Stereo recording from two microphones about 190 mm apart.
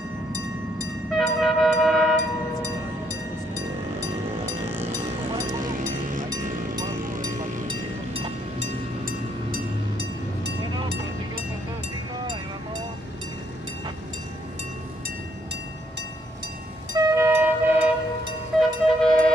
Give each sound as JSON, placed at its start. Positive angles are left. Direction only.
{"t": 1.1, "sound": "train", "side_deg": 0}
{"t": 7.0, "sound": "vehicle", "side_deg": -45}
{"t": 7.6, "sound": "train", "side_deg": -30}
{"t": 9.0, "sound": "train", "side_deg": -55}
{"t": 16.9, "sound": "train", "side_deg": -15}
{"t": 18.6, "sound": "train", "side_deg": 0}